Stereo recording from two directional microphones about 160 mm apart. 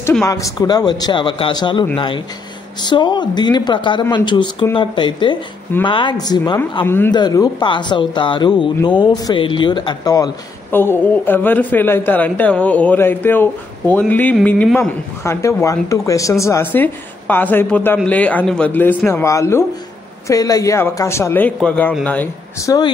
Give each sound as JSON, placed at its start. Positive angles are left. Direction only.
{"t": 0.2, "sound": "a man's voice", "side_deg": 20}
{"t": 10.7, "sound": "a man's voice", "side_deg": 10}